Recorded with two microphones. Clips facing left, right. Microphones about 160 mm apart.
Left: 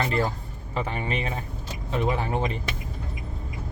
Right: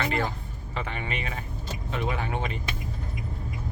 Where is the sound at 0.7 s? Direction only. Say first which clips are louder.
Left 4 dB; 40° left (ahead or behind).